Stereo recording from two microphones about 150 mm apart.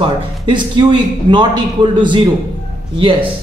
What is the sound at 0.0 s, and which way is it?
Speech, 30° right (ahead or behind).